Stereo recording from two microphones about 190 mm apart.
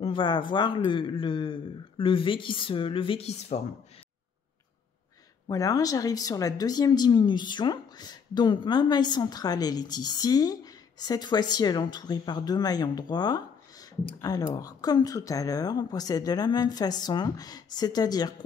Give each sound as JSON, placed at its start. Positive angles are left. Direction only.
{"t": 0.0, "sound": "speech", "side_deg": 25}
{"t": 5.5, "sound": "speech", "side_deg": 20}